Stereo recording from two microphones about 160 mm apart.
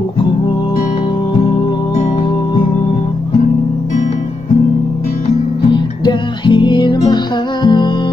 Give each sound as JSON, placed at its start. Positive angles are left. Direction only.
{"t": 5.7, "sound": "music", "side_deg": 30}